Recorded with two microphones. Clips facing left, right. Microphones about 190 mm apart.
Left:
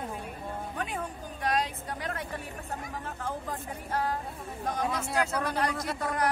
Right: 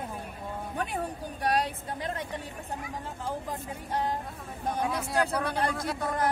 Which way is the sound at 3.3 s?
15° right (ahead or behind).